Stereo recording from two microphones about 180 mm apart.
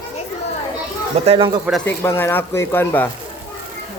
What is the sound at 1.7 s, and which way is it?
Speech, centre (ahead or behind).